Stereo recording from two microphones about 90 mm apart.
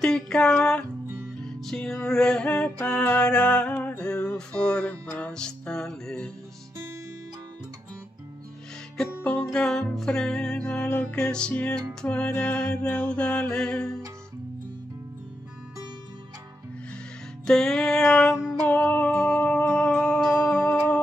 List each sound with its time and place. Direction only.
0.0 s music: 10° left (ahead or behind)
9.2 s music: 15° left (ahead or behind)
9.5 s music: 5° left (ahead or behind)
17.5 s music: 5° left (ahead or behind)